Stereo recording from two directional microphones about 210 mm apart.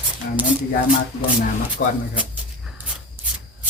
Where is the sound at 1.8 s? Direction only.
55° left (ahead or behind).